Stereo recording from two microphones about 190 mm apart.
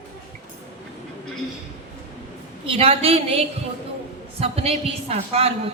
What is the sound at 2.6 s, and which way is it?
A man's voice, 30° right (ahead or behind).